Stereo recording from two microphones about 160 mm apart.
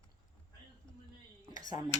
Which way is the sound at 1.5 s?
25° right (ahead or behind).